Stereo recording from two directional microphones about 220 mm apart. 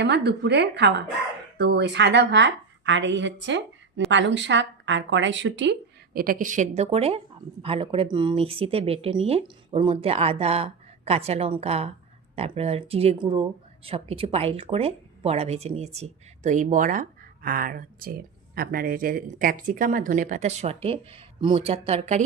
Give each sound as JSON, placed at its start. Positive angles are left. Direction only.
{"t": 0.0, "sound": "a woman's voice", "side_deg": -50}
{"t": 6.1, "sound": "speech", "side_deg": -40}